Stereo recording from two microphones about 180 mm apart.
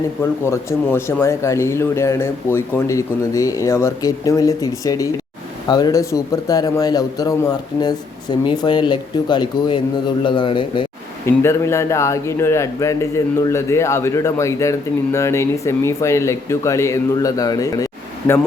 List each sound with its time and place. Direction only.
0.2 s a man's voice: 15° left (ahead or behind)
11.3 s a man's voice: 15° left (ahead or behind)